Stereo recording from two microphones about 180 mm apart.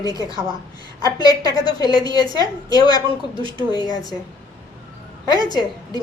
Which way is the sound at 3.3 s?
30° right (ahead or behind).